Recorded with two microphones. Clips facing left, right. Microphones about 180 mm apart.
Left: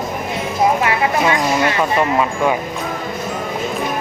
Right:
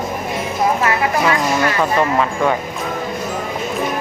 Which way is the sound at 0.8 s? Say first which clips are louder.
Even; 20° left (ahead or behind).